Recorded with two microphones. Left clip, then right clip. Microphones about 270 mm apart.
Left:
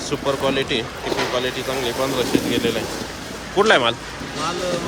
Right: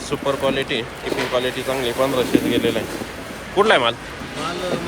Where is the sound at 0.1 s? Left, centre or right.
Centre.